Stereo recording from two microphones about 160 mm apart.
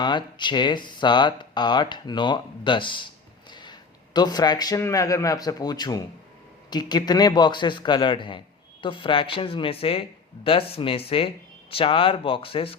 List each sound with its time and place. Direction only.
0.0 s a man's voice: 30° left (ahead or behind)